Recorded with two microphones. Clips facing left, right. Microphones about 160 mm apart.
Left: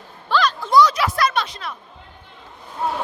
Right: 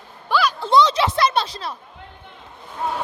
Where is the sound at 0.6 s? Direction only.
25° right (ahead or behind).